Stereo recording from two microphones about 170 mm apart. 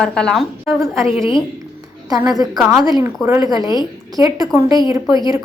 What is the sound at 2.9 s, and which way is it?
Speech, 20° right (ahead or behind).